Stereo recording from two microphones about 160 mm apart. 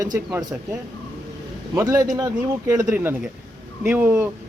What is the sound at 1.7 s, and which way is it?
Speech, 20° right (ahead or behind).